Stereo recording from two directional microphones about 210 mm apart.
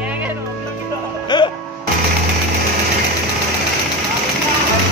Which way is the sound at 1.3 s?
20° left (ahead or behind).